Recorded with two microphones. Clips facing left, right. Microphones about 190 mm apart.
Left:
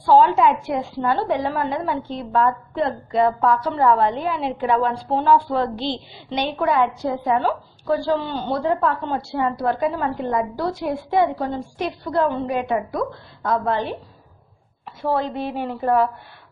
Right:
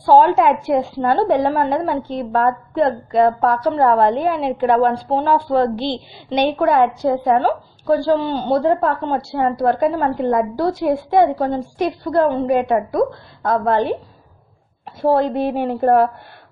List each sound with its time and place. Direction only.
0.2 s a woman's voice: 55° right (ahead or behind)
0.7 s a woman's voice: 40° right (ahead or behind)
15.0 s a woman's voice: 40° right (ahead or behind)
15.2 s a woman's voice: 50° right (ahead or behind)